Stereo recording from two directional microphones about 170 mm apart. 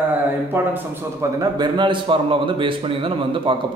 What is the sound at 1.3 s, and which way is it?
A man's voice, 25° right (ahead or behind).